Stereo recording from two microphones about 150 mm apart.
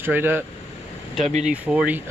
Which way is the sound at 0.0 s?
15° right (ahead or behind).